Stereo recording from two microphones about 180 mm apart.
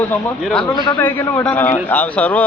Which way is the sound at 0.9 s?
10° left (ahead or behind).